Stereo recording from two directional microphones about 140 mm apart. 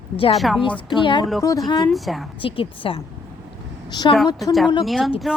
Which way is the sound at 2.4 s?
40° left (ahead or behind).